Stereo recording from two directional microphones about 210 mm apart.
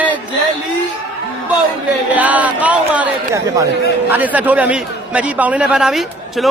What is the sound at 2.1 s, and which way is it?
A man's voice, 5° right (ahead or behind).